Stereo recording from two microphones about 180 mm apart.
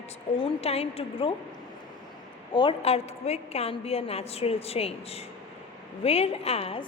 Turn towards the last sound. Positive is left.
turn(degrees=35)  # may be behind; listen again after turning